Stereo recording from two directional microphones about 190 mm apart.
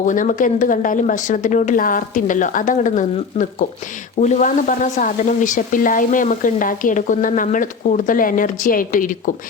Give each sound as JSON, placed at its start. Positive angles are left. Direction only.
{"t": 0.0, "sound": "speech", "side_deg": 40}